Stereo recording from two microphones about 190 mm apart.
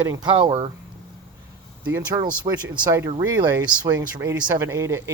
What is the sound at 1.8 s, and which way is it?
Speech, 15° right (ahead or behind).